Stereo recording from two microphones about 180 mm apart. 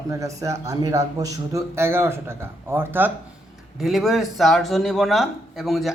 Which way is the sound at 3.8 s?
Centre (ahead or behind).